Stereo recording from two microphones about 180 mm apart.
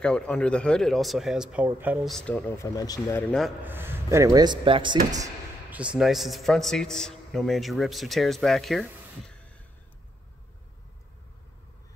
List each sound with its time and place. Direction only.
0.0 s a man's voice: 5° left (ahead or behind)
2.1 s speech: 5° left (ahead or behind)
3.6 s speech: 10° right (ahead or behind)
5.7 s a man's voice: 5° right (ahead or behind)